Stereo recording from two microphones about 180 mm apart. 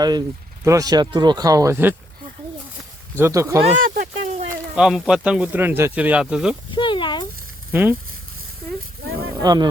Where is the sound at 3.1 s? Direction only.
15° right (ahead or behind).